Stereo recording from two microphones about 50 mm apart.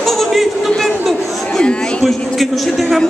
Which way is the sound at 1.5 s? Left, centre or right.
Centre.